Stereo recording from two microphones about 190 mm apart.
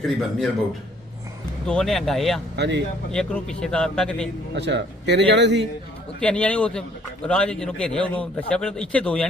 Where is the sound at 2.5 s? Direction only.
65° right (ahead or behind).